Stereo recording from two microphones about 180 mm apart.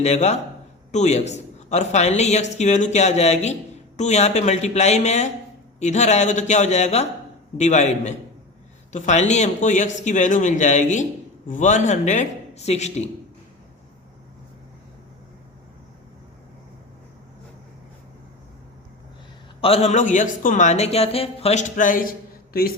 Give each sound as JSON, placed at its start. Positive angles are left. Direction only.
{"t": 0.0, "sound": "a man's voice", "side_deg": 40}
{"t": 19.6, "sound": "a man's voice", "side_deg": 35}